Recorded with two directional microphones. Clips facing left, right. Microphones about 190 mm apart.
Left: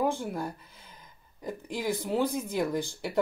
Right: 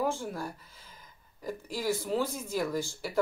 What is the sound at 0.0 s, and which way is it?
Speech, 20° left (ahead or behind).